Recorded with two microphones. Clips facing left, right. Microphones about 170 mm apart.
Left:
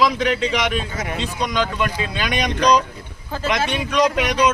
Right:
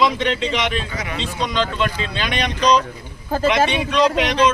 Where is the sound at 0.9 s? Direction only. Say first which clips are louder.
Left 1 dB; 45° left (ahead or behind).